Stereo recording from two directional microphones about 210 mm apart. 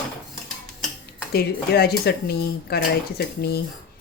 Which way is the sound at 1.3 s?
45° left (ahead or behind).